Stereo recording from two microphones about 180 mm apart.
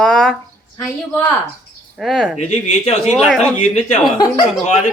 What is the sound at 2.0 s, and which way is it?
Speech, centre (ahead or behind).